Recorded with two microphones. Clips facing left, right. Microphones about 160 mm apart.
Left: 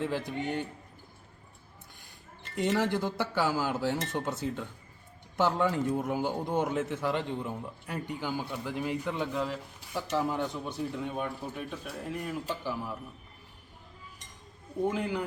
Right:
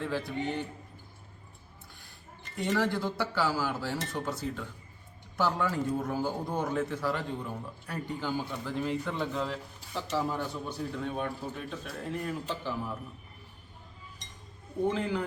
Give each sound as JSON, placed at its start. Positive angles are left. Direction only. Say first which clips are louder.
{"t": 0.0, "sound": "a man's voice", "louder": "even", "side_deg": 15}
{"t": 2.6, "sound": "a man's voice", "louder": "left 1 dB", "side_deg": 20}
{"t": 14.8, "sound": "a man's voice", "louder": "right 1 dB", "side_deg": 10}